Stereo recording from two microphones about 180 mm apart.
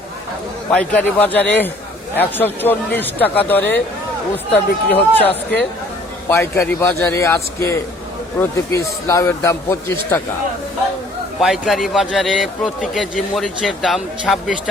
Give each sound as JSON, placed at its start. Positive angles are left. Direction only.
{"t": 0.7, "sound": "a man's voice", "side_deg": 5}
{"t": 11.3, "sound": "a man's voice", "side_deg": 0}